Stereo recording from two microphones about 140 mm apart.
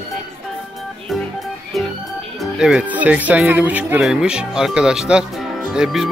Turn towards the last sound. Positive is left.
turn(degrees=-5)  # may be behind; listen again after turning